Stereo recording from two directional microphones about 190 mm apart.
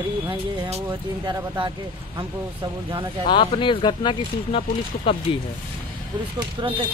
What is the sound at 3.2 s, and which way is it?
Speech, 25° left (ahead or behind).